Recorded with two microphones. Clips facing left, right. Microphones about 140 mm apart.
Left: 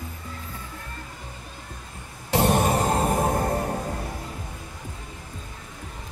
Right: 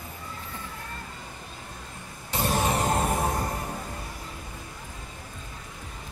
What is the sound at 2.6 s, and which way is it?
Music, 35° left (ahead or behind).